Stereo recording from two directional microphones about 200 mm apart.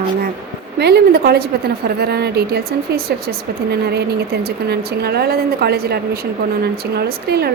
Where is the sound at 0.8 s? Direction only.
55° right (ahead or behind).